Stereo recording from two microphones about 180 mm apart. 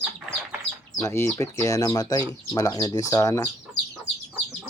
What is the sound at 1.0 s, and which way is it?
Speech, 15° left (ahead or behind).